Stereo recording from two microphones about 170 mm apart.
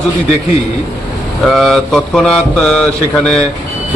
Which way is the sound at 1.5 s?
Centre (ahead or behind).